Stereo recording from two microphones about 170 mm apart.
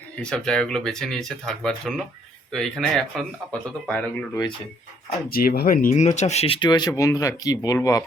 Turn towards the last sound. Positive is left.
turn(degrees=20)  # may be behind; listen again after turning